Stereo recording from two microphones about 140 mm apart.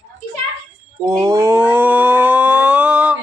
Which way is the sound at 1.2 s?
20° right (ahead or behind).